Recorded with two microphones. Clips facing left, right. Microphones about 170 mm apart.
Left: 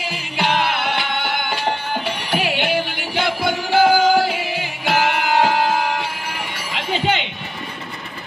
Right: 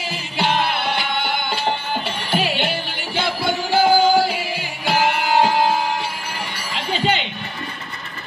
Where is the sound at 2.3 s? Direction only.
15° left (ahead or behind).